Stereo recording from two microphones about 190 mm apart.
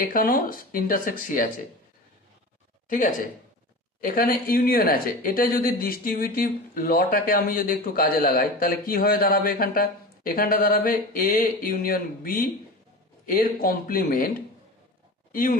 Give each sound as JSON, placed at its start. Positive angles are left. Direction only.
{"t": 0.0, "sound": "speech", "side_deg": 50}
{"t": 2.9, "sound": "speech", "side_deg": 45}
{"t": 15.3, "sound": "speech", "side_deg": 45}